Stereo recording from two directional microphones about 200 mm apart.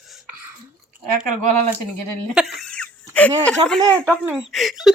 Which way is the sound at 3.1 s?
5° left (ahead or behind).